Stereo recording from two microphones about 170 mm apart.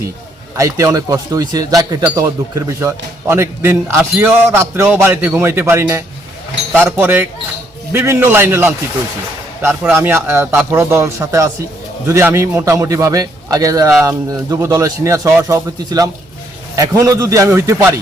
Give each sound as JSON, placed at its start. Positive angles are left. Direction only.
{"t": 0.5, "sound": "speech", "side_deg": -15}
{"t": 9.9, "sound": "a man's voice", "side_deg": -15}